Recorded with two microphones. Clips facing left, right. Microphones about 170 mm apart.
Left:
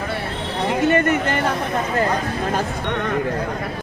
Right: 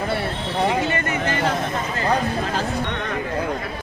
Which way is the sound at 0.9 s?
55° left (ahead or behind).